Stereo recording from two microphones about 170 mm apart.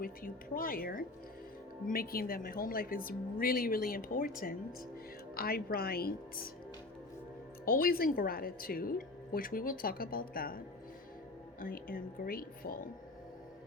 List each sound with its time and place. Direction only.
0.0 s a woman's voice: 55° left (ahead or behind)
7.6 s a woman's voice: 60° left (ahead or behind)
11.6 s a woman's voice: 55° left (ahead or behind)